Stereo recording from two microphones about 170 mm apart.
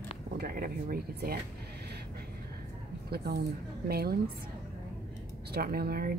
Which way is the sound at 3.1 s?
65° right (ahead or behind).